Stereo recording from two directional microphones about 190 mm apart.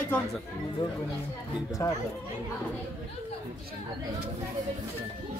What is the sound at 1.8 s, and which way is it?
Speech, 15° left (ahead or behind).